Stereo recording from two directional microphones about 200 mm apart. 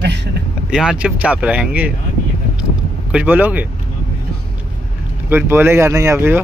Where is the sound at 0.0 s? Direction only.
60° right (ahead or behind).